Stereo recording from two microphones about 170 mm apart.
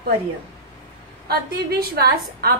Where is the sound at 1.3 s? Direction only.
65° right (ahead or behind).